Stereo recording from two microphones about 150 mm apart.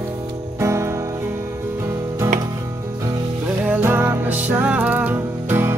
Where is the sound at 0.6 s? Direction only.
20° right (ahead or behind).